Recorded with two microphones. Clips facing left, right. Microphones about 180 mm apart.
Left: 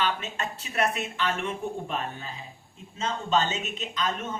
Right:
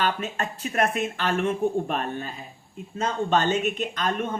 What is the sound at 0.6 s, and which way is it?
Speech, 45° right (ahead or behind).